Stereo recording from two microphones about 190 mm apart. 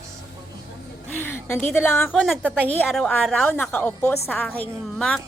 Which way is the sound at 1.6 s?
10° left (ahead or behind).